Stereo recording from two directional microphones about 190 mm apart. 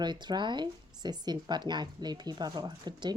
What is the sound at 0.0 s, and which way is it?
Speech, 25° right (ahead or behind).